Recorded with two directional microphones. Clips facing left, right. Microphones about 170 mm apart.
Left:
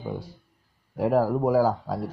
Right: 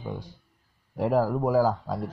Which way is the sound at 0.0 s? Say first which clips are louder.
Left 3 dB; 5° left (ahead or behind).